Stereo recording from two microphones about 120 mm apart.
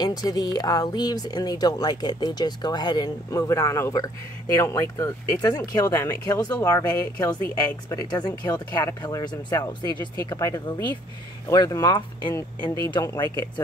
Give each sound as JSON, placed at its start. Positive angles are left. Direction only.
{"t": 0.0, "sound": "speech", "side_deg": 35}